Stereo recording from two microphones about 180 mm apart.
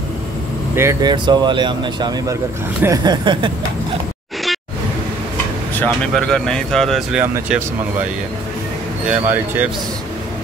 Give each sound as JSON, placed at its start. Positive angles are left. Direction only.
{"t": 0.7, "sound": "speech", "side_deg": -15}
{"t": 1.1, "sound": "speech", "side_deg": -25}
{"t": 5.8, "sound": "speech", "side_deg": 5}
{"t": 9.0, "sound": "speech", "side_deg": -10}